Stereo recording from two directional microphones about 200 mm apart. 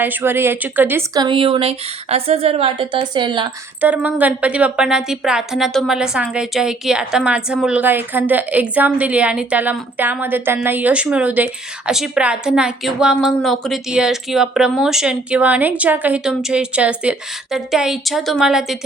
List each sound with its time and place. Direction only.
0.0 s speech: 10° right (ahead or behind)
3.8 s a woman's voice: 10° right (ahead or behind)